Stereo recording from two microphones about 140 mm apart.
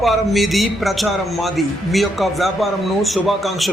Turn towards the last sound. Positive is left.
turn(degrees=0)  # may be behind; listen again after turning